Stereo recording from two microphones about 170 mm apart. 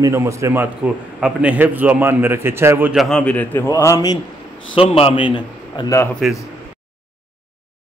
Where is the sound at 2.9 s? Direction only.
5° left (ahead or behind); by 4.1 s 20° left (ahead or behind).